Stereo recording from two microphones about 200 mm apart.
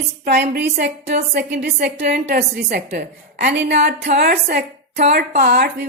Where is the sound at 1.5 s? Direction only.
50° right (ahead or behind).